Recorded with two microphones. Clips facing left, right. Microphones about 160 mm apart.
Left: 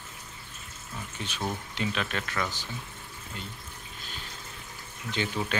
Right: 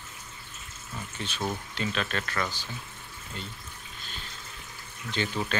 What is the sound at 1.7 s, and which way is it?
Speech, 15° left (ahead or behind).